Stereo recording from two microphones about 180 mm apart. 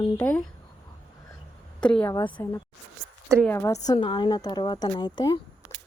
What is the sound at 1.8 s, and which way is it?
Speech, 5° left (ahead or behind).